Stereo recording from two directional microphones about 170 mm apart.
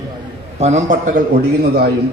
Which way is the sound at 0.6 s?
40° right (ahead or behind).